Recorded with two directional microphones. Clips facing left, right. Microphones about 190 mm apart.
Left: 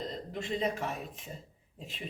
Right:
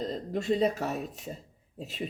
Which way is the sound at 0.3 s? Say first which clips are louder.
Right 7 dB; 40° right (ahead or behind).